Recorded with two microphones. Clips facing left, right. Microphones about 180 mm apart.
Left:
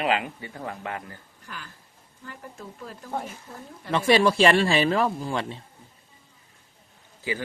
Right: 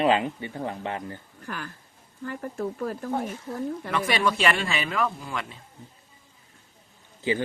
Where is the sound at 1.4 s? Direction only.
55° right (ahead or behind).